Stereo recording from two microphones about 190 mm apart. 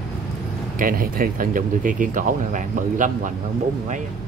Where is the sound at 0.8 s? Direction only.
50° right (ahead or behind).